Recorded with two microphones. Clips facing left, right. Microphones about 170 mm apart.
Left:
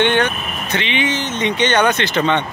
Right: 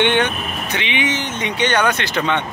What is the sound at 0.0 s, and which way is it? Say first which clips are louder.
Speech: left 1 dB; 15° right (ahead or behind).